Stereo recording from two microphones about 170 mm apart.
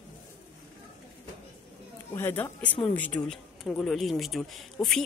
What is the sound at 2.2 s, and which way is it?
A woman's voice, 15° left (ahead or behind).